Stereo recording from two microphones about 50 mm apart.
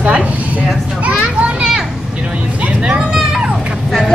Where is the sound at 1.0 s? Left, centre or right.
Right.